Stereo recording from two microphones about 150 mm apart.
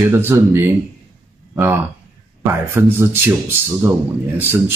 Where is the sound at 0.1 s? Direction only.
15° right (ahead or behind).